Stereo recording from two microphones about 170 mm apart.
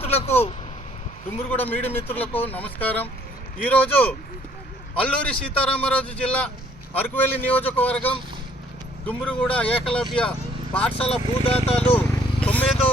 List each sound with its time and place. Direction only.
0.0 s speech: 35° left (ahead or behind)
1.4 s speech: 10° left (ahead or behind)
11.4 s speech: 35° left (ahead or behind)
11.9 s vehicle: 10° left (ahead or behind)